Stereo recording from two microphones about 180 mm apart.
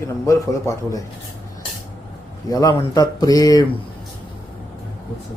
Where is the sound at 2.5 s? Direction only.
20° left (ahead or behind).